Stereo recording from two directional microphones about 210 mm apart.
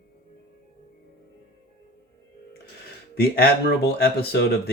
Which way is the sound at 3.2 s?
50° left (ahead or behind).